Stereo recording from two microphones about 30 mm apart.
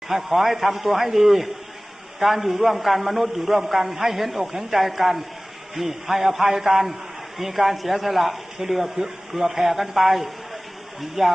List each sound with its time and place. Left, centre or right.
0.1 s a man's voice: centre